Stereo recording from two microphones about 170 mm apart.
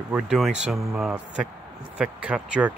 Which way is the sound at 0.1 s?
5° right (ahead or behind).